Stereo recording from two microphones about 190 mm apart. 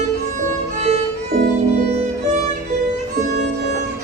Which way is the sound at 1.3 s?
60° right (ahead or behind).